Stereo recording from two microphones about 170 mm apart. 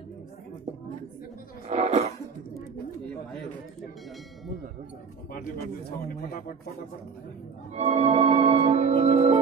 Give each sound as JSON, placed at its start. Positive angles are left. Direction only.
{"t": 1.7, "sound": "music", "side_deg": -40}
{"t": 5.3, "sound": "speech", "side_deg": 60}
{"t": 7.7, "sound": "music", "side_deg": -40}